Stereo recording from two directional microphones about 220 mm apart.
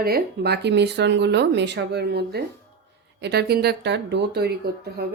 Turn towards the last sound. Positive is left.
turn(degrees=-45)  # may be behind; listen again after turning